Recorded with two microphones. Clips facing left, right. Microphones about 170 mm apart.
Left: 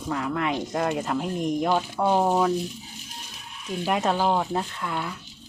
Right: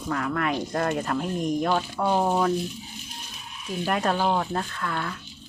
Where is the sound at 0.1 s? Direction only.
20° left (ahead or behind).